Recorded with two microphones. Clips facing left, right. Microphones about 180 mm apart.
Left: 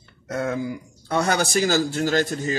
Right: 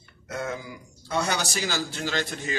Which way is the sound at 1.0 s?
55° left (ahead or behind).